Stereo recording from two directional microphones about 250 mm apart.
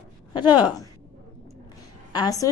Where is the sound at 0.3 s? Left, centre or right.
Centre.